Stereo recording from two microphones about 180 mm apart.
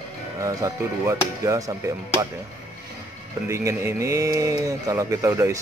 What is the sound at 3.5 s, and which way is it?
Speech, 15° right (ahead or behind).